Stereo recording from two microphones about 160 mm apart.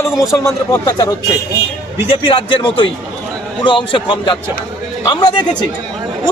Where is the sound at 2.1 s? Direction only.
35° left (ahead or behind).